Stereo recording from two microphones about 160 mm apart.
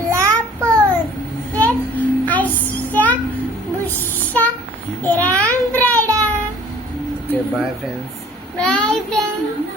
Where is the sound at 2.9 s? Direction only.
10° left (ahead or behind).